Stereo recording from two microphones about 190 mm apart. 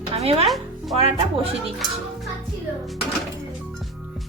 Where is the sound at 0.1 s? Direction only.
30° right (ahead or behind).